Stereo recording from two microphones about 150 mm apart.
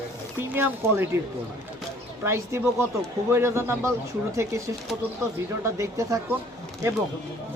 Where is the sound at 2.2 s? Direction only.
15° right (ahead or behind).